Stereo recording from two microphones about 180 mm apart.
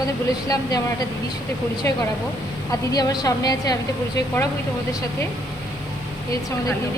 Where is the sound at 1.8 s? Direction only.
15° left (ahead or behind).